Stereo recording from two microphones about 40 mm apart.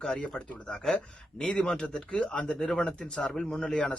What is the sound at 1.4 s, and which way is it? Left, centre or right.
A man's voice, centre.